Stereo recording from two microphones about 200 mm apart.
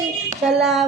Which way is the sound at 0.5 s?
Centre (ahead or behind).